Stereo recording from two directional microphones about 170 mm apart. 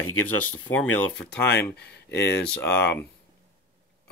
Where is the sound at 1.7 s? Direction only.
80° left.